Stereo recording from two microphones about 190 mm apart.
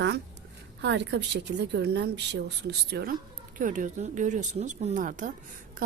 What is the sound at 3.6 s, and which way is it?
A woman's voice, 40° right (ahead or behind).